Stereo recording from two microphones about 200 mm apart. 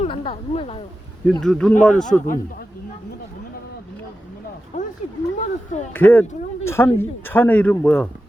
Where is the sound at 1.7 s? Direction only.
40° left (ahead or behind).